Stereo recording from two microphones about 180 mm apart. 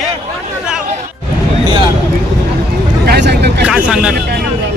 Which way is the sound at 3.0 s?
70° right (ahead or behind).